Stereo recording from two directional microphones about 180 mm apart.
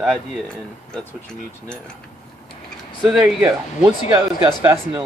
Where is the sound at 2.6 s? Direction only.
5° right (ahead or behind).